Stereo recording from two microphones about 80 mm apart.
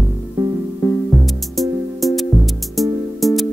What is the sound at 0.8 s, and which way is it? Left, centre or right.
Music, left.